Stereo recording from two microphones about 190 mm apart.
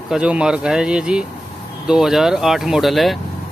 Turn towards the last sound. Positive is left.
turn(degrees=0)  # may be behind; listen again after turning